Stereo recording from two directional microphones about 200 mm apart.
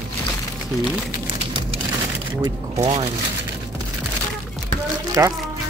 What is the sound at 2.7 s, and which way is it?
Speech, 30° right (ahead or behind).